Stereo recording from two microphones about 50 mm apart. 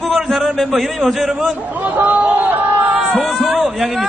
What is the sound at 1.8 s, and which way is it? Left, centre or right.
Speech, right.